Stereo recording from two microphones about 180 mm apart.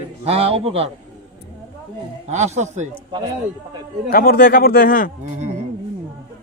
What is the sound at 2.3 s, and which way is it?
Speech, 40° right (ahead or behind).